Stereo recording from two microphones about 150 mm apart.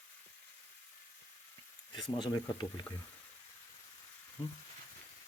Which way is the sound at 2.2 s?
30° left (ahead or behind).